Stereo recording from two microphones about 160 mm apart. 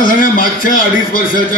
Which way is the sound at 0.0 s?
60° left (ahead or behind).